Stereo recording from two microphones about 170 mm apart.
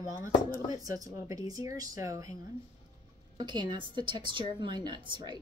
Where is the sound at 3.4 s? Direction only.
25° right (ahead or behind).